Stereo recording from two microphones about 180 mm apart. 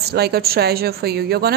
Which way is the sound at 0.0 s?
60° right (ahead or behind).